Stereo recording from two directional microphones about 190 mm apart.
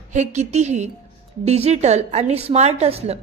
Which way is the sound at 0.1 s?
40° right (ahead or behind).